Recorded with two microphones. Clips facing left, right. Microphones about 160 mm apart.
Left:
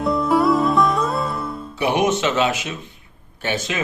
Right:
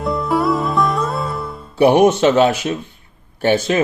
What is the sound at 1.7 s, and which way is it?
Speech, 35° right (ahead or behind).